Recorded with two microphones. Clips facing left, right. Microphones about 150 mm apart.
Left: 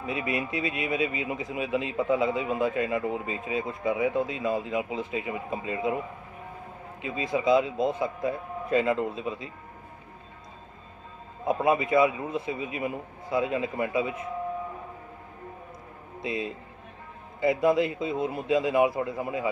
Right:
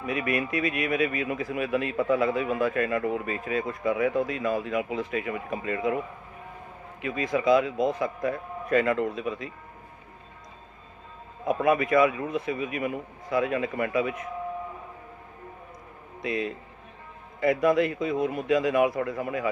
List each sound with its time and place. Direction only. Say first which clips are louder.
0.0 s speech: right 2 dB; 25° left (ahead or behind)
7.0 s speech: right 1 dB; 25° left (ahead or behind)
11.4 s speech: right 1 dB; 25° left (ahead or behind)
16.2 s speech: right 2 dB; 25° left (ahead or behind)